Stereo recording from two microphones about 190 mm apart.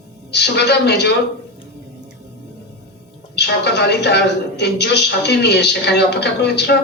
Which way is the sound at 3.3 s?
60° left (ahead or behind).